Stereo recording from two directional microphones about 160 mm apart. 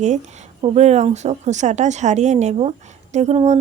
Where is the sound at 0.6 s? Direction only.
40° right (ahead or behind).